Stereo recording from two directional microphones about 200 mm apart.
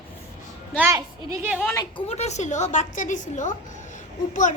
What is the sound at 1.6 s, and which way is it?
Speech, 10° left (ahead or behind).